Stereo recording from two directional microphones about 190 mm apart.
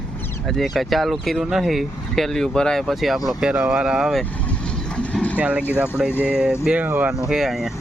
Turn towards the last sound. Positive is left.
turn(degrees=0)  # may be behind; listen again after turning